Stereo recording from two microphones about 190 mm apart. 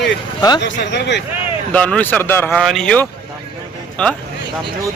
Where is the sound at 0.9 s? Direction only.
65° left (ahead or behind).